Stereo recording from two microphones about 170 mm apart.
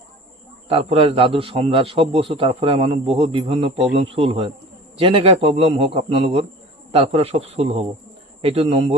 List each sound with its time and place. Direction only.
0.7 s a man's voice: 35° right (ahead or behind)